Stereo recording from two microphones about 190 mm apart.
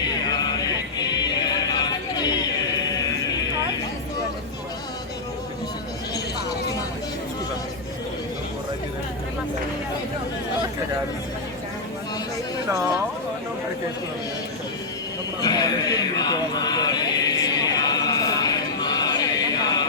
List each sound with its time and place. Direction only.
0.3 s music: 20° left (ahead or behind)
15.4 s horse: 20° left (ahead or behind)